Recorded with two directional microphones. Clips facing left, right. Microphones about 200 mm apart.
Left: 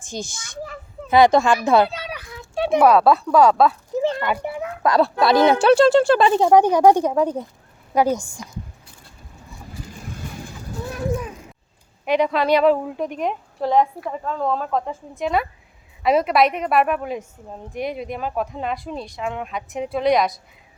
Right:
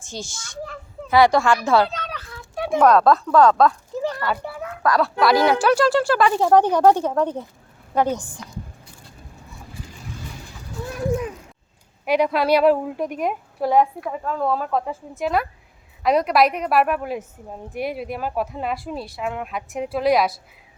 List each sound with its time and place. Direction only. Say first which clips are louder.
0.0 s speech: left 3 dB; 15° left (ahead or behind)
1.6 s children playing: left 2 dB; 15° left (ahead or behind)
2.7 s speech: even; 10° left (ahead or behind)
3.9 s speech: left 3 dB; 20° left (ahead or behind)
12.0 s a woman's voice: even; 5° right (ahead or behind)